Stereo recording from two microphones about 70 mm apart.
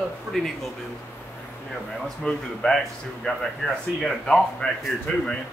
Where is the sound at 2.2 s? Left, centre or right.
Centre.